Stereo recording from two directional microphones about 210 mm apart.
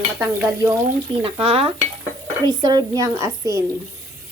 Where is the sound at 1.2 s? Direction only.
25° right (ahead or behind).